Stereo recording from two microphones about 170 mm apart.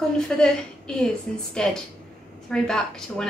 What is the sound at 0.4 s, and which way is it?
A woman's voice, 5° left (ahead or behind).